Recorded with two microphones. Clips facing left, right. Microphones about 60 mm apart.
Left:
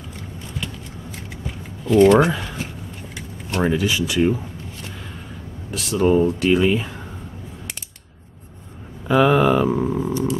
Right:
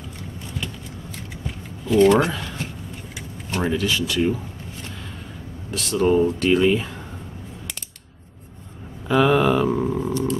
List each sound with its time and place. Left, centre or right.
1.9 s speech: centre
3.2 s a sound: centre
3.7 s speech: centre
5.7 s speech: centre
9.0 s speech: centre